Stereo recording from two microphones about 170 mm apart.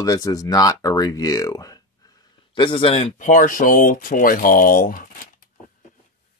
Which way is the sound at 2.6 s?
30° left (ahead or behind).